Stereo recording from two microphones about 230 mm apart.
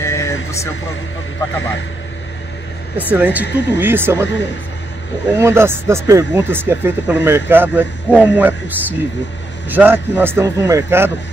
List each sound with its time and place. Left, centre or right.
0.0 s vehicle: centre
3.0 s speech: centre
3.4 s speech: left
3.8 s speech: centre
5.3 s speech: centre